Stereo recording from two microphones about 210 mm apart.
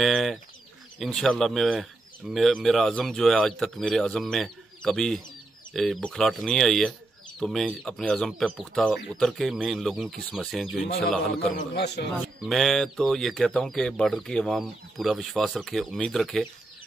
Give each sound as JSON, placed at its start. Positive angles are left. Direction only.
{"t": 0.0, "sound": "speech", "side_deg": 0}
{"t": 11.5, "sound": "a man's voice", "side_deg": 50}
{"t": 12.4, "sound": "speech", "side_deg": 0}